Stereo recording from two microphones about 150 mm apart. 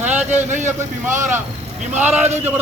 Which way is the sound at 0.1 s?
10° right (ahead or behind).